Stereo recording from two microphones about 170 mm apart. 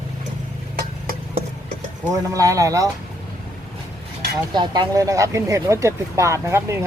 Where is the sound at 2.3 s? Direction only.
20° right (ahead or behind).